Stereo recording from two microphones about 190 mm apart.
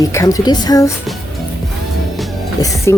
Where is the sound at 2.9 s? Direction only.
15° left (ahead or behind).